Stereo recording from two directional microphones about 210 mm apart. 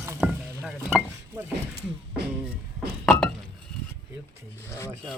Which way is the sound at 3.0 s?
5° left (ahead or behind).